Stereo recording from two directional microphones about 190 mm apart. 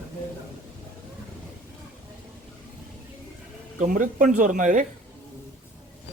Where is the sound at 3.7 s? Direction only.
40° right (ahead or behind).